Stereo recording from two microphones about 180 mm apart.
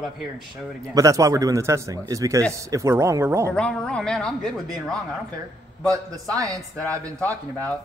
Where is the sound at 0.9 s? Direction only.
20° right (ahead or behind).